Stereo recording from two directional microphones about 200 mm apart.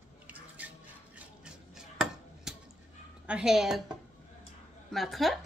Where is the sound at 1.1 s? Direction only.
5° right (ahead or behind).